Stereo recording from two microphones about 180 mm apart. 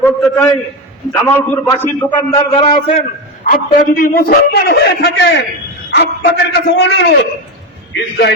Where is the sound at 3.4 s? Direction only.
50° left (ahead or behind).